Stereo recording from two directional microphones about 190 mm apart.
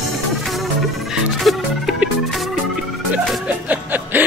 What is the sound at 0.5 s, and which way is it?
Music, centre (ahead or behind).